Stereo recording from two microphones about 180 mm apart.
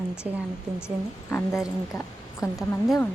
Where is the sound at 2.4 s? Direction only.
Centre (ahead or behind).